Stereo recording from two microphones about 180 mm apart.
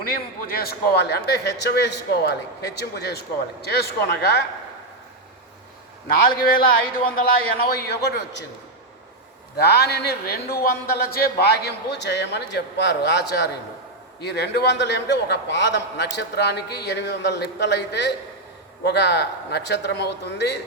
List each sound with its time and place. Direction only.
0.0 s a man's voice: 55° left (ahead or behind)
6.2 s a man's voice: 55° left (ahead or behind); by 8.4 s 70° left (ahead or behind)
9.6 s a man's voice: 65° left (ahead or behind)